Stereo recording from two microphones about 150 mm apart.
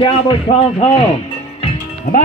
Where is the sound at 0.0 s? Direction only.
35° left (ahead or behind).